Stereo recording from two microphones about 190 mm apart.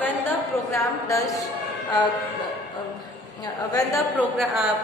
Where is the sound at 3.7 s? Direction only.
15° left (ahead or behind).